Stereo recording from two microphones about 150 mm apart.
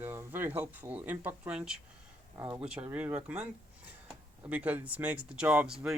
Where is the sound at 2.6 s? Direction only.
5° right (ahead or behind).